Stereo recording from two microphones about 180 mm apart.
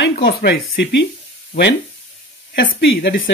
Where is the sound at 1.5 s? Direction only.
80° left.